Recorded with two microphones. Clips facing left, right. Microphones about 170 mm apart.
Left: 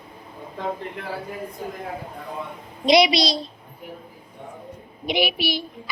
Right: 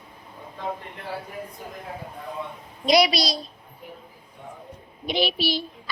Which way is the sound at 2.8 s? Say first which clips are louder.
Left 3 dB; 20° left (ahead or behind).